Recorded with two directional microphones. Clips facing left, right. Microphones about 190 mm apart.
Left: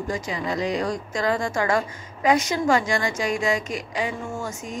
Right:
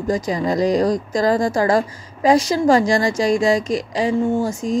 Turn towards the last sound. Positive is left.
turn(degrees=-35)  # may be behind; listen again after turning